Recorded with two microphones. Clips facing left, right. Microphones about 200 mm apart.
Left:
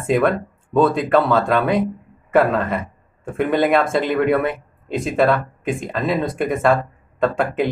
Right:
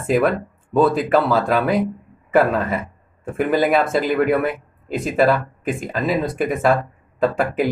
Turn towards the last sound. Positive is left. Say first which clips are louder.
# even
turn(degrees=-5)  # may be behind; listen again after turning